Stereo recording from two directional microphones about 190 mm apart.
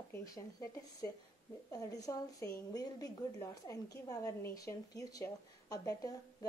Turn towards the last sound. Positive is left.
turn(degrees=20)  # may be behind; listen again after turning